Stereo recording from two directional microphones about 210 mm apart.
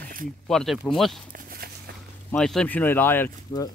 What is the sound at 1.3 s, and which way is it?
Walk, 45° right (ahead or behind).